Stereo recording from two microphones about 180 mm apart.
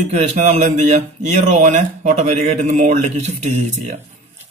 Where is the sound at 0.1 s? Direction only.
40° right (ahead or behind).